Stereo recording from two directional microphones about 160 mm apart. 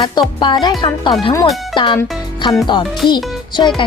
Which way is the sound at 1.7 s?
30° left (ahead or behind).